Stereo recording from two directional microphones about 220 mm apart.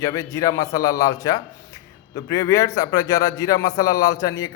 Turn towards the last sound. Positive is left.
turn(degrees=15)  # may be behind; listen again after turning